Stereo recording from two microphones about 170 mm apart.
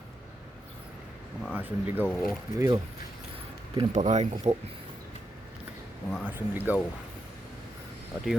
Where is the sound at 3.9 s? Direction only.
45° right (ahead or behind).